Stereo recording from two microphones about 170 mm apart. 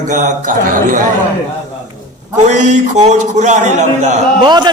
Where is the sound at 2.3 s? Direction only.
45° right (ahead or behind).